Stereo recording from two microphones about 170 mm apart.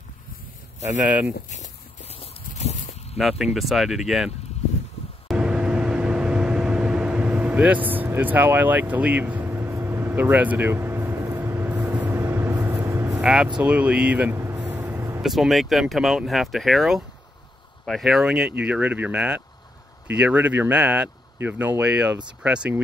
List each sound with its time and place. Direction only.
1.0 s speech: 10° right (ahead or behind)
2.0 s a sound: 35° left (ahead or behind)
3.2 s speech: centre (ahead or behind)
5.3 s vehicle: 5° right (ahead or behind)
13.2 s speech: 5° right (ahead or behind)
13.6 s vehicle: 10° right (ahead or behind)
15.2 s speech: centre (ahead or behind)